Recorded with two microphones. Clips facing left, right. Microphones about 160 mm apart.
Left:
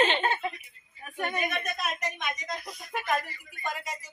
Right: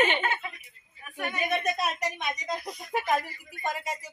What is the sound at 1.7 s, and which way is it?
Speech, 35° right (ahead or behind).